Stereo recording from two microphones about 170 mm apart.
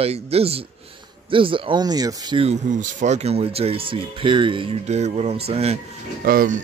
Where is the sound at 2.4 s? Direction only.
45° right (ahead or behind).